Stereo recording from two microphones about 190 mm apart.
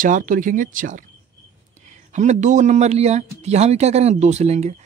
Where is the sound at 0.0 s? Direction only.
45° right (ahead or behind).